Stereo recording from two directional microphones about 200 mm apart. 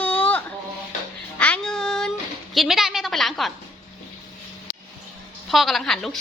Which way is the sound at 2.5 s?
Centre (ahead or behind).